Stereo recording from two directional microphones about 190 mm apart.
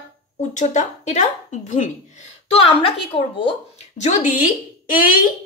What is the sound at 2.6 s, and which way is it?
Speech, 30° left (ahead or behind).